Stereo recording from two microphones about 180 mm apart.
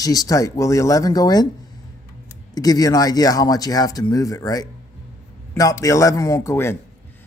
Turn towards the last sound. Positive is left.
turn(degrees=15)  # may be behind; listen again after turning